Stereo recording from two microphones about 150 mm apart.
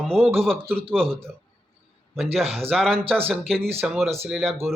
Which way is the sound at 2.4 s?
40° right (ahead or behind).